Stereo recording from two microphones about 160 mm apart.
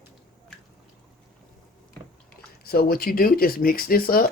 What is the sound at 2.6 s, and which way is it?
Speech, 75° left (ahead or behind).